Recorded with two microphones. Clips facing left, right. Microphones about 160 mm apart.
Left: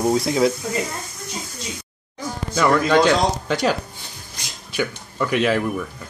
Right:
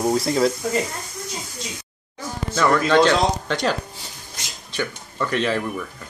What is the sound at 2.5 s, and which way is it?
Speech, 10° left (ahead or behind).